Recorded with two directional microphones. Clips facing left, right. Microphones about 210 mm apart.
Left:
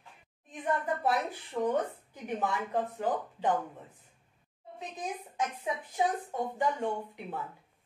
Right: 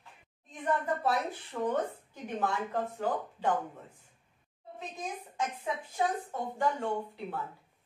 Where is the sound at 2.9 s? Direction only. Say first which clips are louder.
Left 1 dB; 15° left (ahead or behind).